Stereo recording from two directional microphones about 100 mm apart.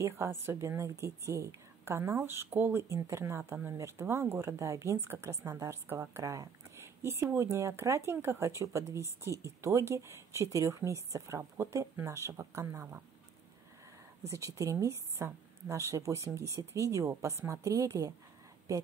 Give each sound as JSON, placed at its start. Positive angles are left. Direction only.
{"t": 0.0, "sound": "speech", "side_deg": -30}
{"t": 14.2, "sound": "speech", "side_deg": -30}